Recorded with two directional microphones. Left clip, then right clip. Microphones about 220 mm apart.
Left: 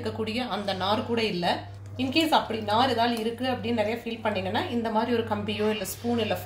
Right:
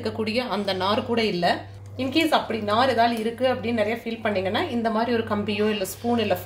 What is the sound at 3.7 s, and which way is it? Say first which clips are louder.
A woman's voice: right 3 dB; 35° right (ahead or behind).